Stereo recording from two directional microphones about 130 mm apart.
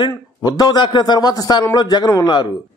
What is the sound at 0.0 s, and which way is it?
Speech, 30° left (ahead or behind).